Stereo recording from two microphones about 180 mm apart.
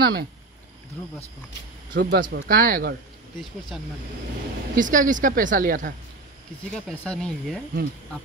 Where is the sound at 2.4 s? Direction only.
55° right (ahead or behind).